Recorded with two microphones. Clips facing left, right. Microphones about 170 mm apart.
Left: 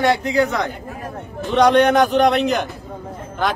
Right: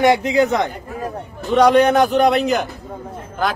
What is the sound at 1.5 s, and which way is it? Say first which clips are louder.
Speech: right 1 dB; 5° right (ahead or behind).